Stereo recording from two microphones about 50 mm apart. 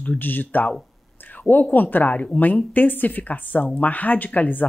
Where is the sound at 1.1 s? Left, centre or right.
Left.